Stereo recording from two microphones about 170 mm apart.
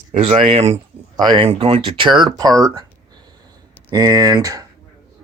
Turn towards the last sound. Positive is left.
turn(degrees=-20)  # may be behind; listen again after turning